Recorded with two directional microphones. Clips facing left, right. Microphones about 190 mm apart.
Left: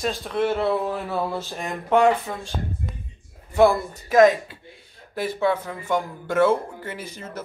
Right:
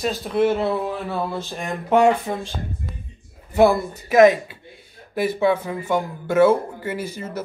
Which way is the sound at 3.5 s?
5° right (ahead or behind).